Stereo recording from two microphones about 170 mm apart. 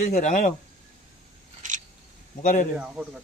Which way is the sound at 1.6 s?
45° right (ahead or behind).